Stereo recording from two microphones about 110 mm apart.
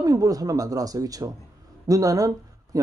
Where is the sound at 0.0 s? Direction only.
35° right (ahead or behind).